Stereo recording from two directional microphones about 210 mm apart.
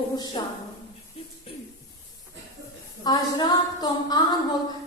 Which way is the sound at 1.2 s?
30° left (ahead or behind).